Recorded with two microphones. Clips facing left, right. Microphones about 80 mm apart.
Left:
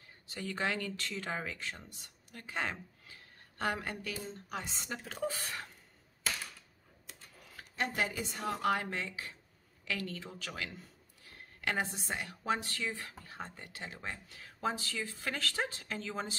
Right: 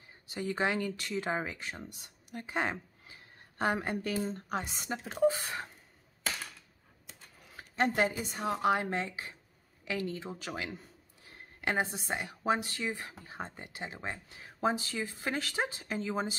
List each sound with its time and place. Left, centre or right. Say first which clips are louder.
0.3 s speech: right 4 dB; centre
2.3 s a sound: right 4 dB; right
4.1 s speech: right 7 dB; right
4.8 s speech: right 12 dB; right
7.7 s a woman's voice: right 6 dB; right
8.1 s speech: right 3 dB; right